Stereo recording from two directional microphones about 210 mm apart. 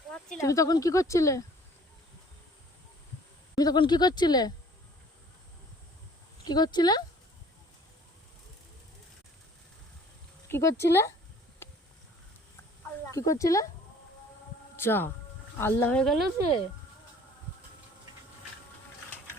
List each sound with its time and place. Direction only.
0.1 s speech: 10° left (ahead or behind)
3.5 s speech: 20° left (ahead or behind)
6.4 s speech: 20° left (ahead or behind)
10.5 s speech: 15° left (ahead or behind)
11.6 s a sound: 10° left (ahead or behind)
13.1 s speech: 15° left (ahead or behind)
14.8 s speech: 10° left (ahead or behind)